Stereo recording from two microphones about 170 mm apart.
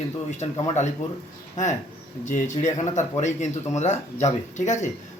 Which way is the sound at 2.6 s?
45° left (ahead or behind).